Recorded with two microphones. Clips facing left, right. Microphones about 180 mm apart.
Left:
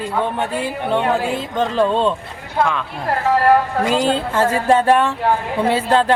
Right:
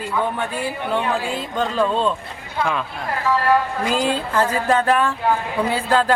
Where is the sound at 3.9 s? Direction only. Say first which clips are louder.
Left 2 dB; 25° left (ahead or behind).